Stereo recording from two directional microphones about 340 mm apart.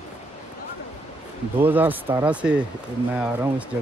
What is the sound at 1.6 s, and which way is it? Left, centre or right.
Speech, centre.